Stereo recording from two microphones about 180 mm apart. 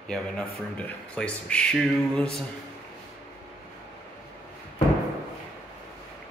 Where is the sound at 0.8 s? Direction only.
5° left (ahead or behind).